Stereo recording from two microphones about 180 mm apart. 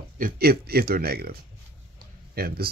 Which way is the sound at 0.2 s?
60° right (ahead or behind).